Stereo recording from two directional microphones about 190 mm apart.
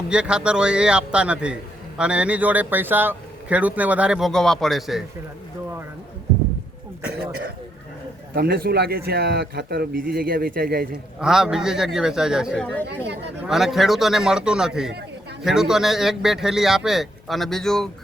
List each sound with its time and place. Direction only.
0.1 s a man's voice: 5° right (ahead or behind)
8.3 s speech: 55° right (ahead or behind)
11.2 s a man's voice: 5° right (ahead or behind)